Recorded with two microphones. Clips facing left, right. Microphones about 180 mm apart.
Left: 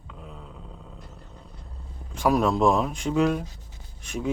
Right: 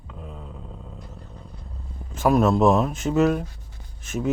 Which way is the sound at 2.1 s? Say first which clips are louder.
Right 3 dB; 5° right (ahead or behind).